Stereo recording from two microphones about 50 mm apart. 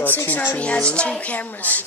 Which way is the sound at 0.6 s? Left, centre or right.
Left.